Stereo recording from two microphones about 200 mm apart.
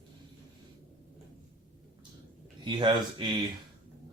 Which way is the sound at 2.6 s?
25° right (ahead or behind).